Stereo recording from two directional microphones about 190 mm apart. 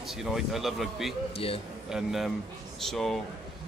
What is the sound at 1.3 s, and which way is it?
Speech, 30° left (ahead or behind).